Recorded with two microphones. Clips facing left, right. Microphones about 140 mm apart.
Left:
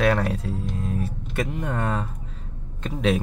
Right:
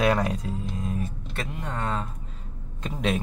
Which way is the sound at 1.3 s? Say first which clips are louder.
Left 9 dB; 10° left (ahead or behind).